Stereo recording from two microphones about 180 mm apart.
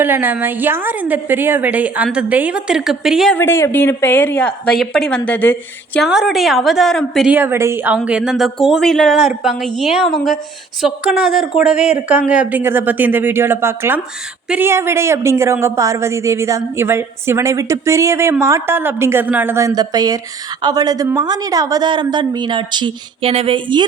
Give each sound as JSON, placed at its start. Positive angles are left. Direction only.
{"t": 0.0, "sound": "a woman's voice", "side_deg": -10}
{"t": 3.3, "sound": "speech", "side_deg": 15}
{"t": 6.1, "sound": "a woman's voice", "side_deg": 0}